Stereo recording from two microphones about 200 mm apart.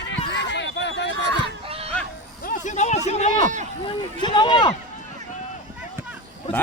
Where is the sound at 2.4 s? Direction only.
40° left (ahead or behind).